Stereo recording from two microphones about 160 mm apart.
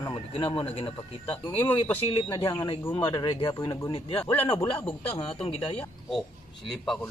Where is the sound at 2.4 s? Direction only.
25° left (ahead or behind).